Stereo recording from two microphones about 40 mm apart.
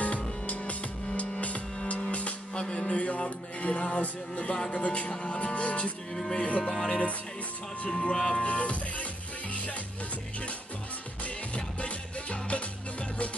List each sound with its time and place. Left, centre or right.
0.5 s music: left
4.7 s speech: left
11.2 s music: left